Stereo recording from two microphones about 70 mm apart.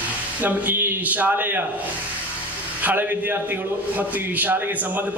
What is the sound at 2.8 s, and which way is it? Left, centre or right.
A man's voice, right.